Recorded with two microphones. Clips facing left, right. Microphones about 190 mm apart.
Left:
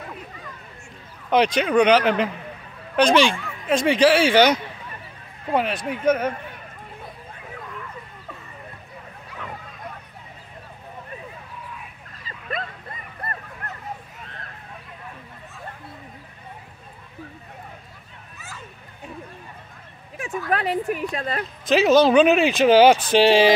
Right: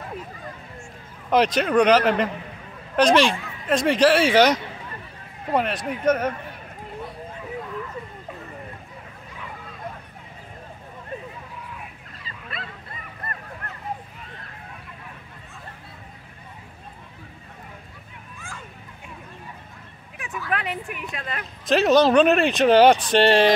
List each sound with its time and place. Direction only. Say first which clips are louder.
1.3 s speech: left 1 dB; centre (ahead or behind)
12.5 s dog: left 8 dB; 40° left (ahead or behind)
20.2 s a sound: left 4 dB; 35° left (ahead or behind)
21.6 s speech: left 1 dB; centre (ahead or behind)